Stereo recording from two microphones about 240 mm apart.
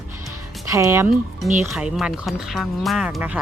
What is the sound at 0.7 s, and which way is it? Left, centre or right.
Speech, centre.